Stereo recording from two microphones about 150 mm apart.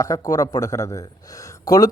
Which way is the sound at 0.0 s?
20° left (ahead or behind).